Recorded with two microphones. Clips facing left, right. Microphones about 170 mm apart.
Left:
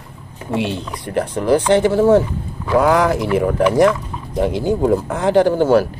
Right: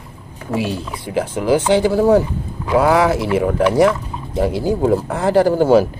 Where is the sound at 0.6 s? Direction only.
5° right (ahead or behind).